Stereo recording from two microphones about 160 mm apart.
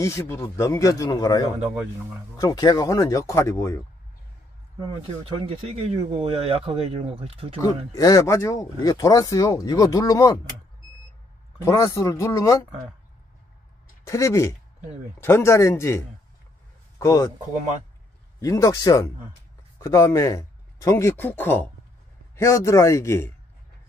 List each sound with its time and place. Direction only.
0.0 s speech: 15° left (ahead or behind)
5.3 s speech: 35° right (ahead or behind)
7.6 s speech: 20° left (ahead or behind)
11.6 s speech: 20° left (ahead or behind)
14.0 s a man's voice: 20° left (ahead or behind)
18.4 s a man's voice: 20° left (ahead or behind)